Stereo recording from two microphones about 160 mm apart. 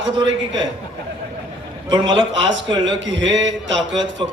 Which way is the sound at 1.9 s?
30° right (ahead or behind).